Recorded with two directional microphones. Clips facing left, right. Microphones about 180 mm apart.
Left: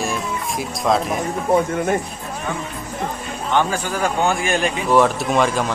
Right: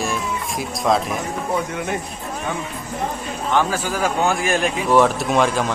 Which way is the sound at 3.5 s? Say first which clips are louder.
Even; 5° right (ahead or behind).